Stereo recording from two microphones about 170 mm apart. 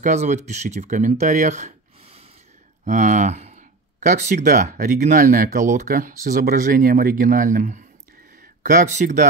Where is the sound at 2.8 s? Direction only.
45° right (ahead or behind).